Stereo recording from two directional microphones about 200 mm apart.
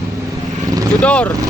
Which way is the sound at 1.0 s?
5° left (ahead or behind).